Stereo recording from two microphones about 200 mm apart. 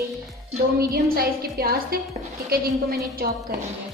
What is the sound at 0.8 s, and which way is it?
A woman's voice, 50° right (ahead or behind).